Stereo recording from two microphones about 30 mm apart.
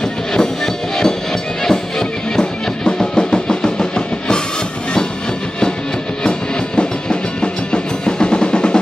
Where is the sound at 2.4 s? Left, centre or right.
Left.